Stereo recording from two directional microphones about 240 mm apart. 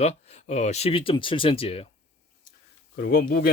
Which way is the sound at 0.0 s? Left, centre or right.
Left.